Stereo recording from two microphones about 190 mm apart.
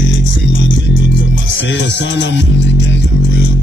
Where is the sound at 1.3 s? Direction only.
80° left.